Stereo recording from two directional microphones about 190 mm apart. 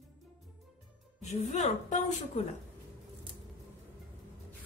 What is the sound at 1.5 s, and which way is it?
Speech, 40° left (ahead or behind).